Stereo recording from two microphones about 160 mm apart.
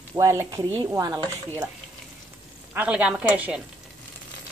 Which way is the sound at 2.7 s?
10° right (ahead or behind).